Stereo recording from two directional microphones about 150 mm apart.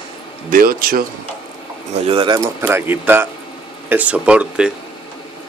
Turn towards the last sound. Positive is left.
turn(degrees=-5)  # may be behind; listen again after turning